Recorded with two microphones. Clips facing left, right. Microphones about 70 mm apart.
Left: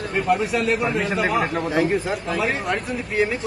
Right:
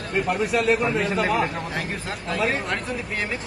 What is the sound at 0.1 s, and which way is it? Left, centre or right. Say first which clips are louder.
A man's voice: left 1 dB; centre.